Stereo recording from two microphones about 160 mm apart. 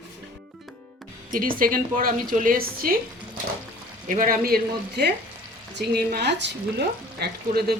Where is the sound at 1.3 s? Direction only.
60° right (ahead or behind).